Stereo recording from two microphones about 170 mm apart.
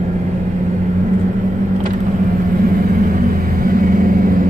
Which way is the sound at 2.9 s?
55° right (ahead or behind).